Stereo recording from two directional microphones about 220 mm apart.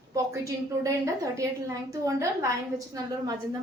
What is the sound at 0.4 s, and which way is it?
A woman's voice, 15° right (ahead or behind).